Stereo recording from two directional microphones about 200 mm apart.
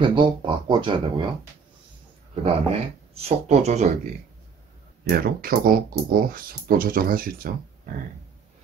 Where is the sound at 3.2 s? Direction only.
30° right (ahead or behind).